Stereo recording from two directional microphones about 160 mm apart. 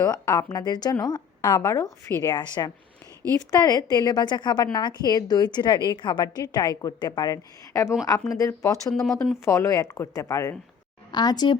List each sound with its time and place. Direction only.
0.0 s a woman's voice: 20° left (ahead or behind)
8.9 s speech: 5° left (ahead or behind)
9.4 s a woman's voice: 20° left (ahead or behind)